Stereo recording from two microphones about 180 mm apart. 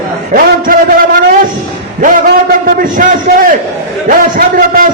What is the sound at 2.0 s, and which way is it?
A man's voice, 50° right (ahead or behind).